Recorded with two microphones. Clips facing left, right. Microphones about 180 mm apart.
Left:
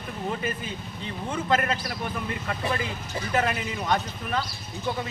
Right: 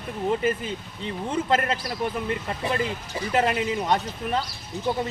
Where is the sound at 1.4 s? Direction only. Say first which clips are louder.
Even; 30° right (ahead or behind).